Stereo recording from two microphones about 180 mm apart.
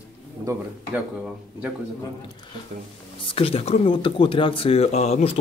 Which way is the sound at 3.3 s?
30° left (ahead or behind).